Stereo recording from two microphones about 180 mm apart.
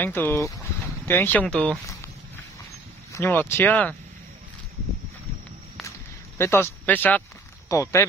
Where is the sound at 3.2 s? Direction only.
10° left (ahead or behind).